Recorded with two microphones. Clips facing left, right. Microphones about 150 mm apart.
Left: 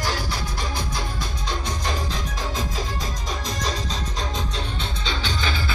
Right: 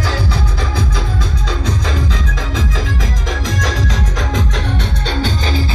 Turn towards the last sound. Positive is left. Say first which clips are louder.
# right 8 dB
turn(degrees=-45)  # may be behind; listen again after turning